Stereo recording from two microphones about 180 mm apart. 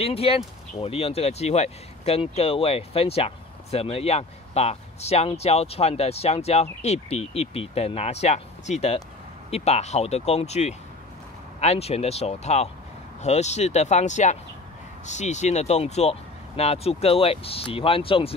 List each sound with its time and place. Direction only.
0.0 s speech: 35° left (ahead or behind)